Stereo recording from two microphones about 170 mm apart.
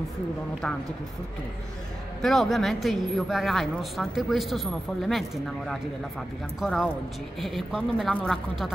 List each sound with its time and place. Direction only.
2.2 s speech: centre (ahead or behind)
6.6 s speech: centre (ahead or behind)